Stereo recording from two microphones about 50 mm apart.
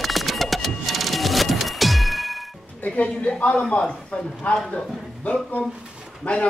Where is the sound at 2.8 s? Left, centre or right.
Left.